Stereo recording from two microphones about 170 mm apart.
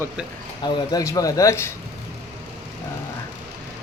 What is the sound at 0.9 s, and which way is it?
Speech, 20° left (ahead or behind).